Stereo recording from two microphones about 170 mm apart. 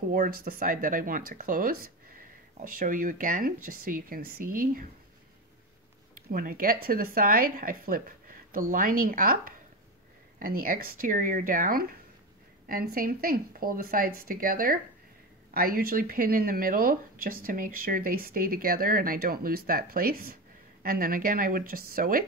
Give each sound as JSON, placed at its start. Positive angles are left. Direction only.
{"t": 0.1, "sound": "speech", "side_deg": -60}
{"t": 6.1, "sound": "speech", "side_deg": -55}